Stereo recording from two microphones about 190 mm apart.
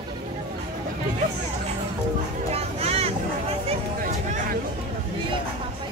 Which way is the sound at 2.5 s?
30° right (ahead or behind).